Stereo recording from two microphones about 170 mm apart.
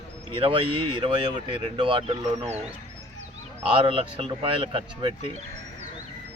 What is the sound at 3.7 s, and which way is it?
Speech, 30° right (ahead or behind).